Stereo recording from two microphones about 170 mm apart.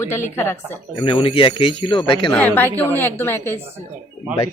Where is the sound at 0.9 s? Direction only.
30° left (ahead or behind).